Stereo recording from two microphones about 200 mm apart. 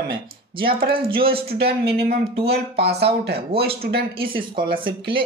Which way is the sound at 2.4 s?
55° right (ahead or behind).